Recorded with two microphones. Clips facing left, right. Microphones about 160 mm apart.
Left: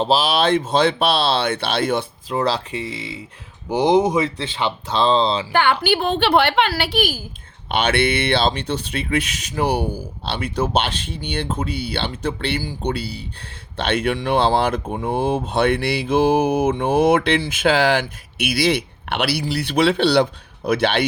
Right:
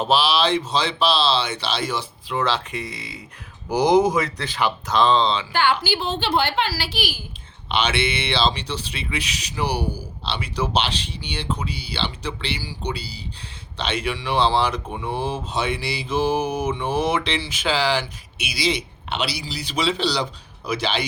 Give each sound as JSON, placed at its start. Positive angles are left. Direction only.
{"t": 0.0, "sound": "mantra", "side_deg": 40}
{"t": 2.3, "sound": "speech", "side_deg": 35}
{"t": 5.5, "sound": "mantra", "side_deg": 55}
{"t": 7.7, "sound": "speech", "side_deg": 55}
{"t": 14.9, "sound": "mantra", "side_deg": 50}